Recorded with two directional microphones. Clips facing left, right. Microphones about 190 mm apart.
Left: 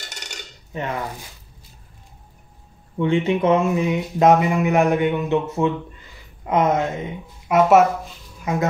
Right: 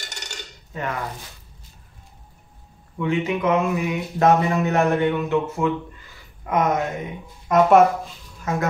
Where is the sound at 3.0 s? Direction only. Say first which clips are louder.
Left 4 dB; 30° left (ahead or behind).